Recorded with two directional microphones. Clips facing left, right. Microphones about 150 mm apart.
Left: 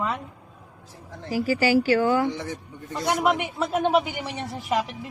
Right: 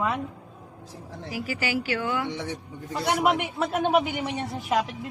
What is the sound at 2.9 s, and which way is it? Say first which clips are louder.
A man's voice: left 1 dB; 5° right (ahead or behind).